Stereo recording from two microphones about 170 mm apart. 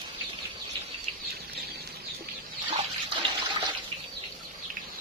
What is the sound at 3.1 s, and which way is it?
Water, 30° right (ahead or behind).